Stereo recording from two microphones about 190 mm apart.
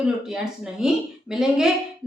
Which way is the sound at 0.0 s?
5° right (ahead or behind).